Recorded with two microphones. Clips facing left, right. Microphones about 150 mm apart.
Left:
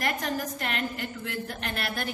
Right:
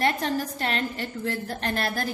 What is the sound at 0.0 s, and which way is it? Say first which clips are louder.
A woman's voice: right 4 dB; 30° right (ahead or behind).